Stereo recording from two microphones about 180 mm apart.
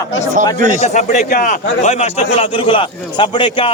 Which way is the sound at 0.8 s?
40° left (ahead or behind).